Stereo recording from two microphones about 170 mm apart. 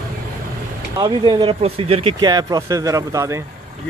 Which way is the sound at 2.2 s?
20° right (ahead or behind).